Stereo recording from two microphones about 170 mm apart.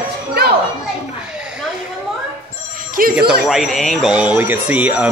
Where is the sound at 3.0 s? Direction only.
55° right (ahead or behind).